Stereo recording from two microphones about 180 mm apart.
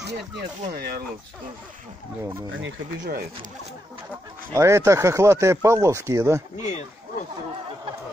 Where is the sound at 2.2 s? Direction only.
15° right (ahead or behind).